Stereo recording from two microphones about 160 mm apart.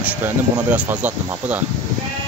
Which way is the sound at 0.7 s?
10° right (ahead or behind).